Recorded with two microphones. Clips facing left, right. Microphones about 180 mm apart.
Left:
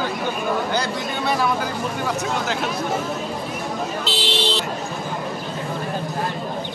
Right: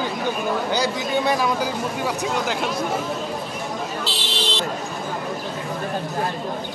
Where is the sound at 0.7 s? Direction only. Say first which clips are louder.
Right 2 dB; 15° right (ahead or behind).